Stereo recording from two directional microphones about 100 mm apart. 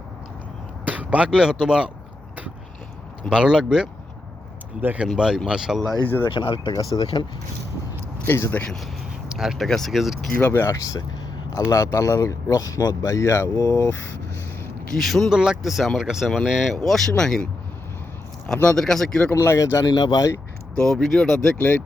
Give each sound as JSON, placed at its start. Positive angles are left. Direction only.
{"t": 0.9, "sound": "speech", "side_deg": -15}
{"t": 3.2, "sound": "speech", "side_deg": -10}
{"t": 4.8, "sound": "speech", "side_deg": -20}
{"t": 5.0, "sound": "speech", "side_deg": -5}
{"t": 6.0, "sound": "speech", "side_deg": 20}
{"t": 6.2, "sound": "speech", "side_deg": 60}
{"t": 6.7, "sound": "speech", "side_deg": 40}
{"t": 8.2, "sound": "speech", "side_deg": 25}
{"t": 9.3, "sound": "speech", "side_deg": -5}
{"t": 10.4, "sound": "speech", "side_deg": 25}
{"t": 14.9, "sound": "speech", "side_deg": 0}
{"t": 19.4, "sound": "speech", "side_deg": 30}
{"t": 20.7, "sound": "speech", "side_deg": 5}
{"t": 21.6, "sound": "speech", "side_deg": 20}